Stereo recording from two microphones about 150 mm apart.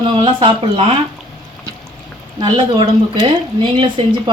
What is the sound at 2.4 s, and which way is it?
Speech, 35° right (ahead or behind).